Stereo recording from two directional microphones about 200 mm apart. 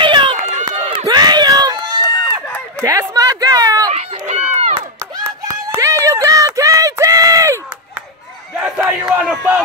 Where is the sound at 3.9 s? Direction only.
35° right (ahead or behind).